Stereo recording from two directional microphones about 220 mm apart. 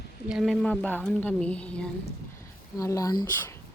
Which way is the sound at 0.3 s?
Centre (ahead or behind).